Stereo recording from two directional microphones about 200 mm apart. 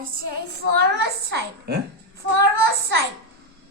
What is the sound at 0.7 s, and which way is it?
A child's voice, 55° right (ahead or behind).